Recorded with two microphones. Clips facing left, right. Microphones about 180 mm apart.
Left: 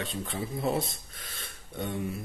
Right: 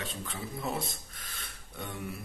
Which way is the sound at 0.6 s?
25° left (ahead or behind).